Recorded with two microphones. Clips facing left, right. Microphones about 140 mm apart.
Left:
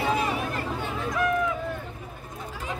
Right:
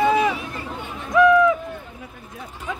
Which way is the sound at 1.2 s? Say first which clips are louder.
Right 12 dB; 90° right.